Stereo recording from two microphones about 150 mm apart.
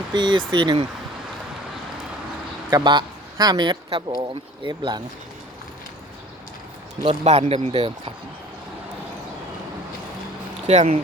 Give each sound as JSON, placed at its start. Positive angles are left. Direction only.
{"t": 0.1, "sound": "speech", "side_deg": -30}
{"t": 2.6, "sound": "a man's voice", "side_deg": -30}
{"t": 7.0, "sound": "speech", "side_deg": -45}
{"t": 10.7, "sound": "speech", "side_deg": -45}